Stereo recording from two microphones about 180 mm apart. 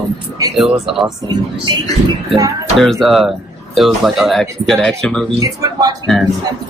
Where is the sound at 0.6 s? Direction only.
Centre (ahead or behind).